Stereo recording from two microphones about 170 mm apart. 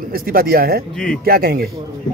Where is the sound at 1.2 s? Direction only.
60° right (ahead or behind).